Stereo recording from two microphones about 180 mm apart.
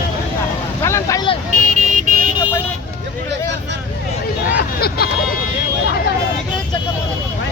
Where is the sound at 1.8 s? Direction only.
45° right (ahead or behind).